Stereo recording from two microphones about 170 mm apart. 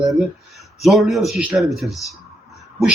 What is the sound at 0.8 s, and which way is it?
A man's voice, centre (ahead or behind).